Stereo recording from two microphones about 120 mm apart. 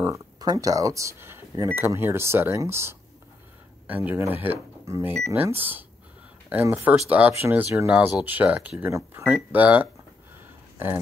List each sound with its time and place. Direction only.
0.0 s speech: 30° right (ahead or behind); by 9.8 s 15° right (ahead or behind)